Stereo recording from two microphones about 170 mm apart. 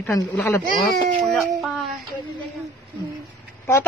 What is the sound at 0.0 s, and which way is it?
Speech, 10° left (ahead or behind).